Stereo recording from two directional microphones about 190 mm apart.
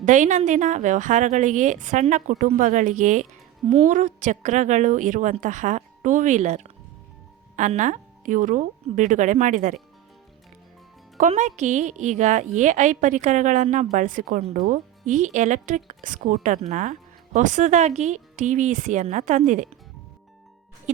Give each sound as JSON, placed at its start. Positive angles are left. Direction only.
{"t": 0.0, "sound": "speech", "side_deg": -40}
{"t": 11.2, "sound": "speech", "side_deg": -40}